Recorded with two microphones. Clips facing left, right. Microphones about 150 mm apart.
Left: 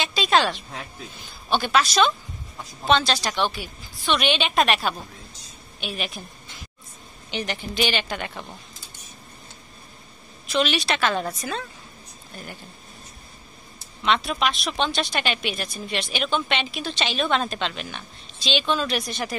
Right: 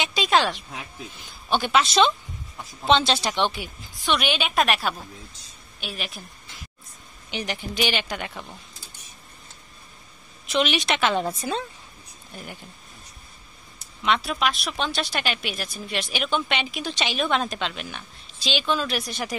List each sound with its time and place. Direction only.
0.0 s a sound: 15° right (ahead or behind)
0.5 s a woman's voice: 10° right (ahead or behind)
7.2 s a woman's voice: 10° right (ahead or behind)
10.4 s a woman's voice: 20° right (ahead or behind)
14.0 s a woman's voice: 10° right (ahead or behind)